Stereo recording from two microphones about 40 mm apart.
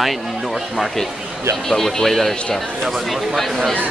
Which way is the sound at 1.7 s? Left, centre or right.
Centre.